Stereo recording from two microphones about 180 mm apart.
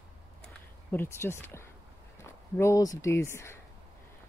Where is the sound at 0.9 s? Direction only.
15° left (ahead or behind).